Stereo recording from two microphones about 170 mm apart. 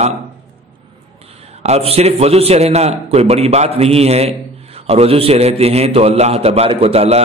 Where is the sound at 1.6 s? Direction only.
35° right (ahead or behind).